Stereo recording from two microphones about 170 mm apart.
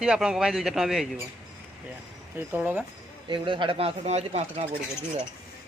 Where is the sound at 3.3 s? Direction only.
30° right (ahead or behind).